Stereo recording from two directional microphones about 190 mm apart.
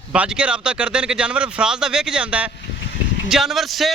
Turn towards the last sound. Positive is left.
turn(degrees=0)  # may be behind; listen again after turning